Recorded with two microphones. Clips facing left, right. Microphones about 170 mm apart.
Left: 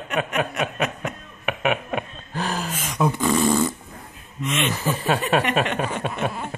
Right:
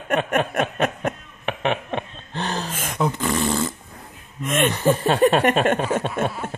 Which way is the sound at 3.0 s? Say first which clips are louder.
Left 2 dB; 15° left (ahead or behind).